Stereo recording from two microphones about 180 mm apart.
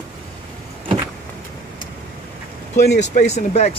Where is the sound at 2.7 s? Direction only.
40° left (ahead or behind).